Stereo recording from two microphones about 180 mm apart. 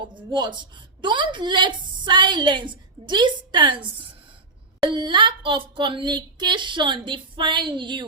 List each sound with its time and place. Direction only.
0.1 s a woman's voice: 25° right (ahead or behind)